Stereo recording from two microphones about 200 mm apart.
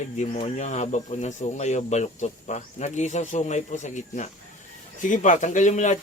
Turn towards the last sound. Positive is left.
turn(degrees=35)  # may be behind; listen again after turning